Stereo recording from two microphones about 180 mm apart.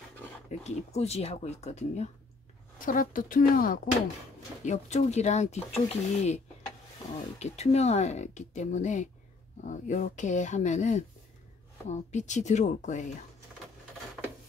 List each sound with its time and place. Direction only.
0.5 s speech: 35° left (ahead or behind)
2.8 s speech: 50° left (ahead or behind)